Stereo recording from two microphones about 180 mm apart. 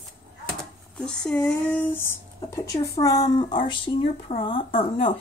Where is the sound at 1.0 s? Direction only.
5° left (ahead or behind).